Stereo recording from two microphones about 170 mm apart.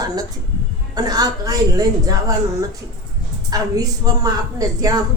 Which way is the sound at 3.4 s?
20° right (ahead or behind).